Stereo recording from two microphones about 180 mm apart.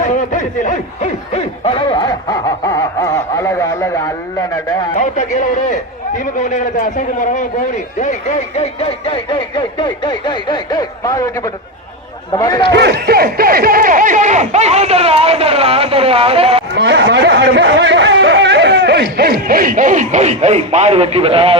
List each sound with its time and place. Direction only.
0.0 s speech: 45° left (ahead or behind); by 4.9 s 20° left (ahead or behind)
4.9 s a man's voice: 45° left (ahead or behind); by 11.3 s 20° left (ahead or behind)
12.3 s speech: 20° left (ahead or behind)
12.7 s speech: 65° right (ahead or behind); by 16.6 s 30° right (ahead or behind)
16.7 s speech: 75° right (ahead or behind); by 21.6 s 30° right (ahead or behind)